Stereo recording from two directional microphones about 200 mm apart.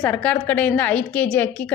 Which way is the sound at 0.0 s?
5° left (ahead or behind).